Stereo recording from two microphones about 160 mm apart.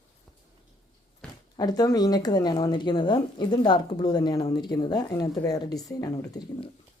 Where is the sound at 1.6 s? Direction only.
25° left (ahead or behind).